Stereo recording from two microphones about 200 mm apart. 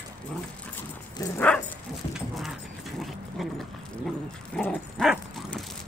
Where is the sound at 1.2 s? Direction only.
10° left (ahead or behind).